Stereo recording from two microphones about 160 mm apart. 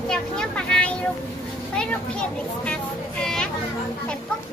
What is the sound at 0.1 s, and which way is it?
Vehicle, 5° left (ahead or behind).